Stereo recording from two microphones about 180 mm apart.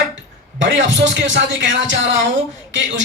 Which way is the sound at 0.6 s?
90° right.